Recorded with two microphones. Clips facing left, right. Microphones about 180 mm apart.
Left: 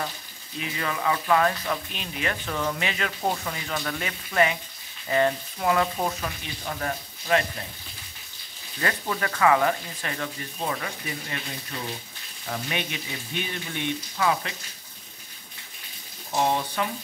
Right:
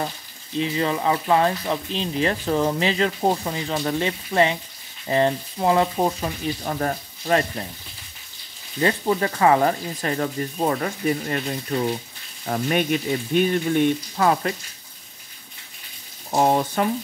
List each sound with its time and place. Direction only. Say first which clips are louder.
0.6 s speech: right 8 dB; 30° right (ahead or behind)
8.8 s speech: right 7 dB; 30° right (ahead or behind); by 14.5 s 45° right (ahead or behind)
16.3 s speech: right 5 dB; 45° right (ahead or behind)